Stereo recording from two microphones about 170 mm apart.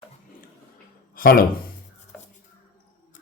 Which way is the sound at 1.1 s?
55° left (ahead or behind).